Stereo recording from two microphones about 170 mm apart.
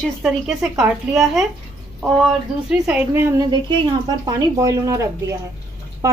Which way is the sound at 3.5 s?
30° right (ahead or behind).